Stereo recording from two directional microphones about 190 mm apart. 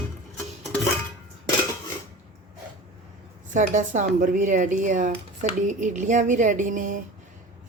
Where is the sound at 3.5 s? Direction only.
40° right (ahead or behind).